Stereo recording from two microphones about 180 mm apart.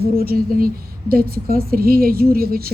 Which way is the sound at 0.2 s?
55° right (ahead or behind).